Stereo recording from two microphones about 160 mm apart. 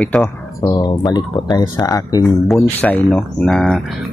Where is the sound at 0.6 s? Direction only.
25° left (ahead or behind).